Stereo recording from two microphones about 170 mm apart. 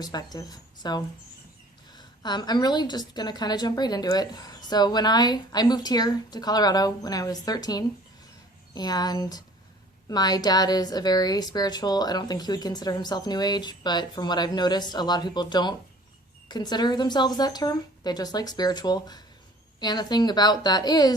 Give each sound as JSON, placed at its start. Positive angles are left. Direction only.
{"t": 0.0, "sound": "a woman's voice", "side_deg": 25}